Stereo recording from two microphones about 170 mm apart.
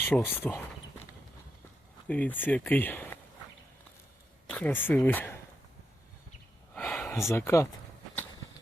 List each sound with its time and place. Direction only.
0.1 s speech: 15° left (ahead or behind)
2.0 s speech: 10° left (ahead or behind)
4.5 s speech: 10° left (ahead or behind)
6.7 s a sound: 10° left (ahead or behind)
7.3 s speech: 15° left (ahead or behind)